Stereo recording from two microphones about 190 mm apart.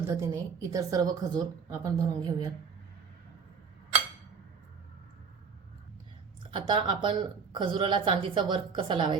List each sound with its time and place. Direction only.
0.2 s a woman's voice: 20° right (ahead or behind)
6.5 s speech: 25° right (ahead or behind)